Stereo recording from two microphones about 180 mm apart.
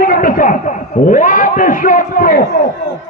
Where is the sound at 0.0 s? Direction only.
50° left (ahead or behind).